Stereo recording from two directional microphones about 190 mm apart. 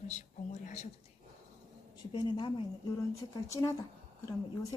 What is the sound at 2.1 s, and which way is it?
Speech, 25° left (ahead or behind).